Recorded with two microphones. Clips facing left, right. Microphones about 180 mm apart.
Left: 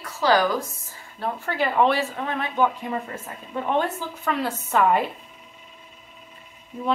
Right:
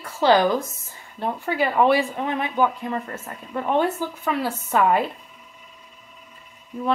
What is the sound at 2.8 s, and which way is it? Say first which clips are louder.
Speech: right 1 dB; 10° left (ahead or behind).